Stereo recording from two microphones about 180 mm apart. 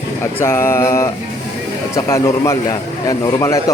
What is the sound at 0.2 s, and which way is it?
A man's voice, 15° left (ahead or behind).